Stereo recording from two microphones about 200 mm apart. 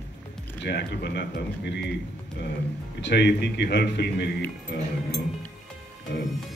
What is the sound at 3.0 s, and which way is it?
A man's voice, 60° left (ahead or behind).